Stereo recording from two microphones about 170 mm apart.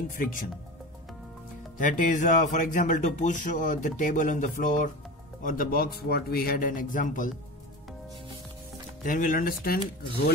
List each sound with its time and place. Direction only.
0.2 s a man's voice: 55° left (ahead or behind)
1.8 s a man's voice: 50° left (ahead or behind)
9.0 s a man's voice: 55° left (ahead or behind)